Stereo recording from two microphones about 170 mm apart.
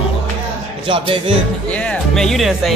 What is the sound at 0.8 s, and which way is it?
Speech, 30° right (ahead or behind).